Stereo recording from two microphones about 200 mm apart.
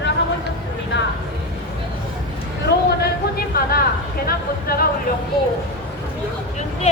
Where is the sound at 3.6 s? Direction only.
45° left (ahead or behind).